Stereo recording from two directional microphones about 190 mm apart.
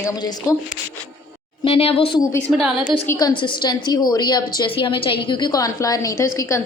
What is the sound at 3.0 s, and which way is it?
Speech, 15° left (ahead or behind).